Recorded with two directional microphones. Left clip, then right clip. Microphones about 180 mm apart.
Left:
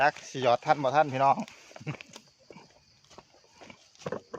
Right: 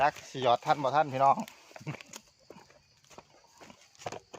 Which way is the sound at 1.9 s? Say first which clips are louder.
Even; 50° right (ahead or behind).